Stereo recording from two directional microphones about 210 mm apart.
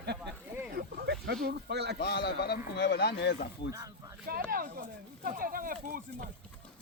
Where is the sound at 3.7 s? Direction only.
15° right (ahead or behind).